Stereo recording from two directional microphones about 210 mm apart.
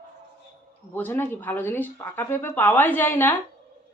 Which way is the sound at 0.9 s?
10° left (ahead or behind).